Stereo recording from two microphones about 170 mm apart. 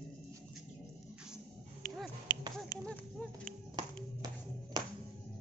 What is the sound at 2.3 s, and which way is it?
Finger snapping, 25° left (ahead or behind).